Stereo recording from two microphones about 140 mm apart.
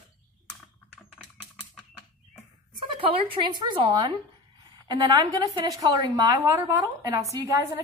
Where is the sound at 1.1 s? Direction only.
10° left (ahead or behind).